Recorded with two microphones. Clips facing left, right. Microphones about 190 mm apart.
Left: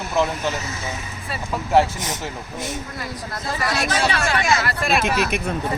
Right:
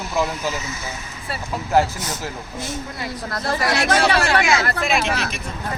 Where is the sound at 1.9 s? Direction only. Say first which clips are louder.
Even; 20° left (ahead or behind).